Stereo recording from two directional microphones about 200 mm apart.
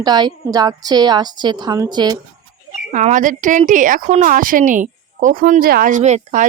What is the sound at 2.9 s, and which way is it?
A woman's voice, 35° right (ahead or behind).